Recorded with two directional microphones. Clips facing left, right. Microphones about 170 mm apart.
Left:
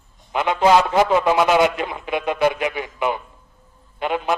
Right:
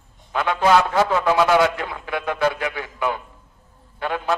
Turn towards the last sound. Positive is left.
turn(degrees=20)  # may be behind; listen again after turning